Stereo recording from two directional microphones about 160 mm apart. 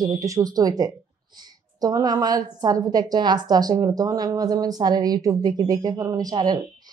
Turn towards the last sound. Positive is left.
turn(degrees=-25)  # may be behind; listen again after turning